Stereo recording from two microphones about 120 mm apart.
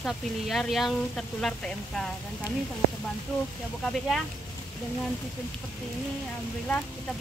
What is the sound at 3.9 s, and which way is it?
Speech, centre (ahead or behind).